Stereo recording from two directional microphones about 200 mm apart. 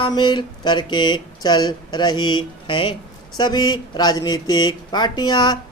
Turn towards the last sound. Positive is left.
turn(degrees=20)  # may be behind; listen again after turning